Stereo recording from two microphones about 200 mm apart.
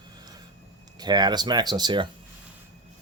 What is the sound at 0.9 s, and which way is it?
Speech, 20° right (ahead or behind).